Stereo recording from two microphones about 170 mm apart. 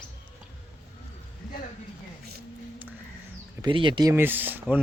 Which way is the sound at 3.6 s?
30° right (ahead or behind).